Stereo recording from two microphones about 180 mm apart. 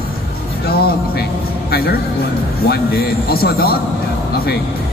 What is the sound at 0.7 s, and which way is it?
A man's voice, 60° left (ahead or behind).